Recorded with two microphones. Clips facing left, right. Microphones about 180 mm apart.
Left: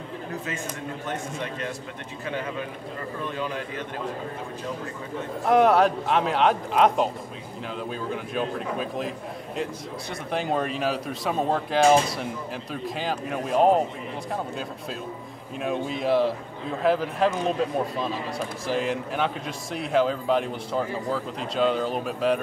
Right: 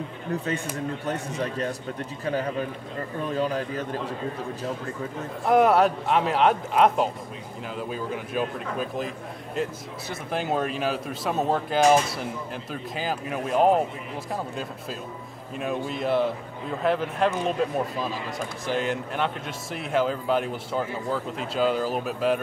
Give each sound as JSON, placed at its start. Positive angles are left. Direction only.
{"t": 1.0, "sound": "a man's voice", "side_deg": -35}
{"t": 5.4, "sound": "a man's voice", "side_deg": 0}
{"t": 10.3, "sound": "a man's voice", "side_deg": 0}